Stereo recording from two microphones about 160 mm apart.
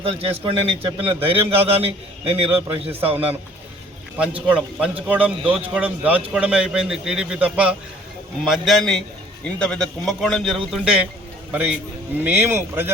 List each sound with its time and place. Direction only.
0.0 s a man's voice: 35° right (ahead or behind)
4.5 s a man's voice: 10° right (ahead or behind)
12.2 s a man's voice: 15° right (ahead or behind)